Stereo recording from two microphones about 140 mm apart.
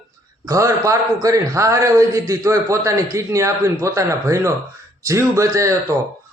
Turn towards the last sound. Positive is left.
turn(degrees=-20)  # may be behind; listen again after turning